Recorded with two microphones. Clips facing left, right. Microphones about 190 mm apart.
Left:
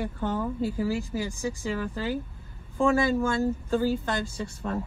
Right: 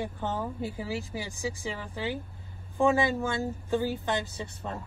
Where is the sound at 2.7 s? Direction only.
15° right (ahead or behind).